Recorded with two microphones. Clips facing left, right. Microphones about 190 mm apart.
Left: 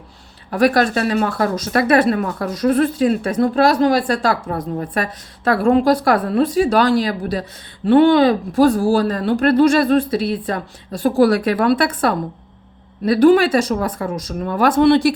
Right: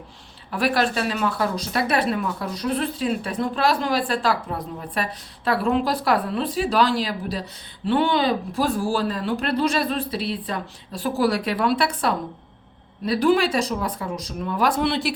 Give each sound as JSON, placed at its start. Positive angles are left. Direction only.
{"t": 0.5, "sound": "speech", "side_deg": 45}